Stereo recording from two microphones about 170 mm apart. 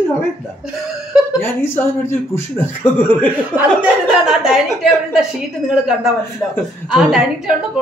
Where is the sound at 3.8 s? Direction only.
5° right (ahead or behind).